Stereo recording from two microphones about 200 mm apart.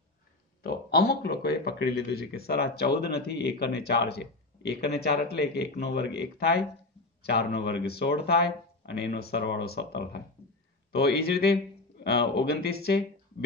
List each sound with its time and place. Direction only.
0.6 s speech: 50° left (ahead or behind)